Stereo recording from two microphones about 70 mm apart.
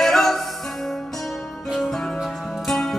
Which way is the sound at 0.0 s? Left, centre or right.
Centre.